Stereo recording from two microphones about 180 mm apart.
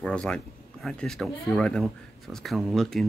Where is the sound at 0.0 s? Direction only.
5° left (ahead or behind).